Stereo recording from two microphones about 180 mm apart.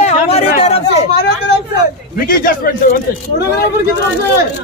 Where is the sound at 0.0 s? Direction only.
35° left (ahead or behind).